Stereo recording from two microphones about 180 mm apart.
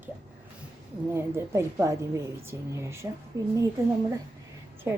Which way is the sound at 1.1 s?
15° right (ahead or behind).